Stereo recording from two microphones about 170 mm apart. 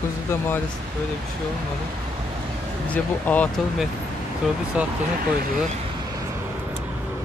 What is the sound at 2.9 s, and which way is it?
Speech, 10° left (ahead or behind).